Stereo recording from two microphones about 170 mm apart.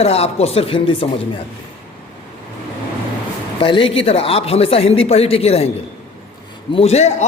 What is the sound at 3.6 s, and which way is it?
Speech, 30° left (ahead or behind).